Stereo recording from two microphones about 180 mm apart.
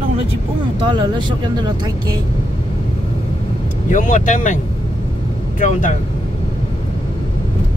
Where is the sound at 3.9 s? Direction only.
45° left (ahead or behind).